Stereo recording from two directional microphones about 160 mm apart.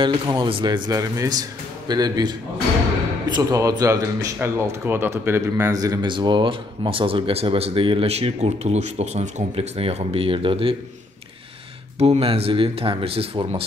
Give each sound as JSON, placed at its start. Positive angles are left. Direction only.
{"t": 0.0, "sound": "a man's voice", "side_deg": -30}
{"t": 12.0, "sound": "a man's voice", "side_deg": -40}